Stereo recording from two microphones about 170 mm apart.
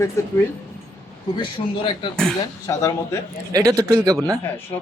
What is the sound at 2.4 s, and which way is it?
Speech, 20° left (ahead or behind).